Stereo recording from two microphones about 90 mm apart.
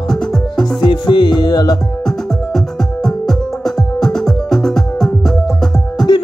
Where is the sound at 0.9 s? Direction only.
60° left (ahead or behind).